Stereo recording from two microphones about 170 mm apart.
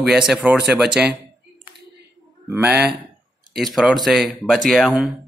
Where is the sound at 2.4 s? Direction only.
10° right (ahead or behind).